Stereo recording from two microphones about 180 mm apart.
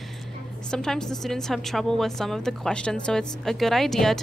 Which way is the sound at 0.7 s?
5° left (ahead or behind).